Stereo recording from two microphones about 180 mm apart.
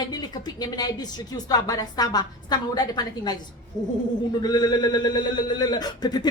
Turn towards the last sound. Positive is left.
turn(degrees=25)  # may be behind; listen again after turning